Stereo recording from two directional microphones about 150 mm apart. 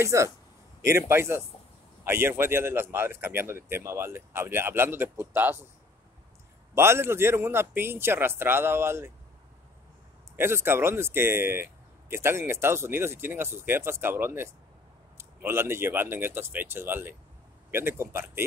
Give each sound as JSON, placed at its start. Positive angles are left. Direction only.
{"t": 0.0, "sound": "speech", "side_deg": -20}
{"t": 6.7, "sound": "speech", "side_deg": -15}
{"t": 10.3, "sound": "speech", "side_deg": -15}